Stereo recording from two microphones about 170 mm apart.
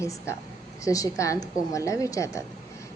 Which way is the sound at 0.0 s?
15° left (ahead or behind).